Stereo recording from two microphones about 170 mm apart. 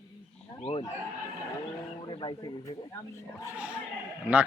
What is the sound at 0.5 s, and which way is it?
Speech, 40° left (ahead or behind).